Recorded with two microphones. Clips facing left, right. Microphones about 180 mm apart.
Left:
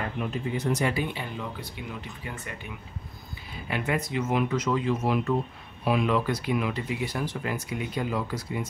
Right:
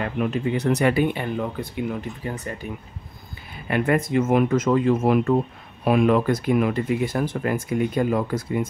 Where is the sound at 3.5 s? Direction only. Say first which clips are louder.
Right 8 dB; 55° right (ahead or behind).